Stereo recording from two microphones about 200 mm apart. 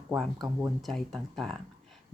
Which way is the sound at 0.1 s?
Centre (ahead or behind).